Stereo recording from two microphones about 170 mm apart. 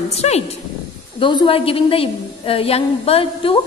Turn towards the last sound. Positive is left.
turn(degrees=35)  # may be behind; listen again after turning